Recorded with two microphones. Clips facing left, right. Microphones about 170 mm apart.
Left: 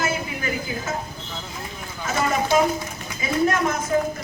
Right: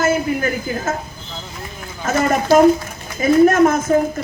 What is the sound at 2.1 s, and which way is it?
A man's voice, 50° right (ahead or behind).